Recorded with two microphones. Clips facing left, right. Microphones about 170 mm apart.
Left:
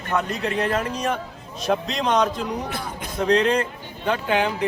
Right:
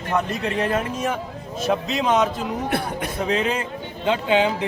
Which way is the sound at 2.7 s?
65° right (ahead or behind).